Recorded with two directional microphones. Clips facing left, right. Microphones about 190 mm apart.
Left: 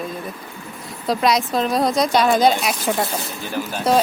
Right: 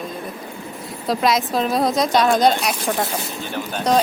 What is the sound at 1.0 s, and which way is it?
A woman's voice, centre (ahead or behind).